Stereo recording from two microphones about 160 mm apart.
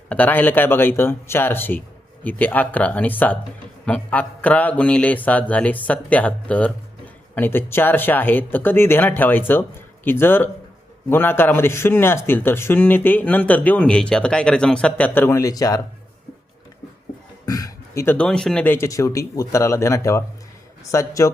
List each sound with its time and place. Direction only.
0.1 s speech: 10° left (ahead or behind)
17.4 s speech: 25° left (ahead or behind)